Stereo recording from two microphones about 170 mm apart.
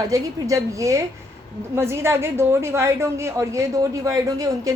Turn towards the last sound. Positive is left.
turn(degrees=-20)  # may be behind; listen again after turning